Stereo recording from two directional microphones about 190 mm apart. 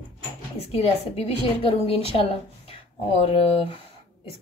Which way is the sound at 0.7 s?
35° left (ahead or behind).